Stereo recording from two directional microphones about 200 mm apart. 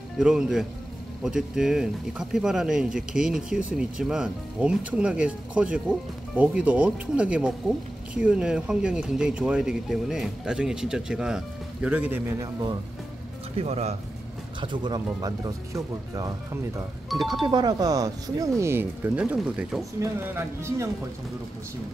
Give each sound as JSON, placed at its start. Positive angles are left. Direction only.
{"t": 0.2, "sound": "speech", "side_deg": -5}
{"t": 13.6, "sound": "speech", "side_deg": -30}
{"t": 17.1, "sound": "speech", "side_deg": 0}
{"t": 17.5, "sound": "speech", "side_deg": -20}